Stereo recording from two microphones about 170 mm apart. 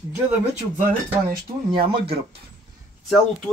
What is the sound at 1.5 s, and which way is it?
Speech, 35° right (ahead or behind).